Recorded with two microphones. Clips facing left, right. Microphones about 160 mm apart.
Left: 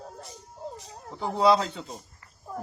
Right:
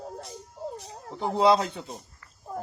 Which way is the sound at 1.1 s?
20° right (ahead or behind).